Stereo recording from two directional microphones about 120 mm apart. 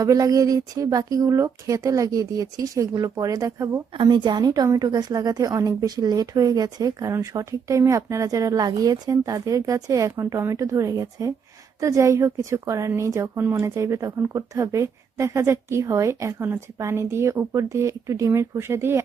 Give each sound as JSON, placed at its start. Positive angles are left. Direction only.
{"t": 0.0, "sound": "a woman's voice", "side_deg": -30}
{"t": 3.9, "sound": "a woman's voice", "side_deg": -40}